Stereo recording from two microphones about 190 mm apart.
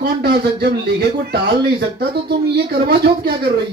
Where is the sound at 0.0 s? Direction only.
60° right (ahead or behind).